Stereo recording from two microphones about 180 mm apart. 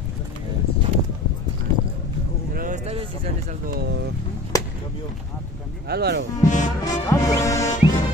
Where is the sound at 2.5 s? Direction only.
50° right (ahead or behind).